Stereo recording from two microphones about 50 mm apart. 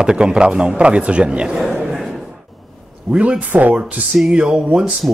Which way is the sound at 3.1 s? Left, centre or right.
Right.